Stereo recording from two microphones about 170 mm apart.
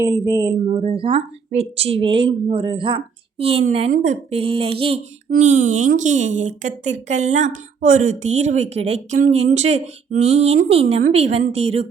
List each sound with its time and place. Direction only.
0.0 s speech: 25° right (ahead or behind)
0.7 s speech: 40° right (ahead or behind)
5.3 s speech: 50° right (ahead or behind)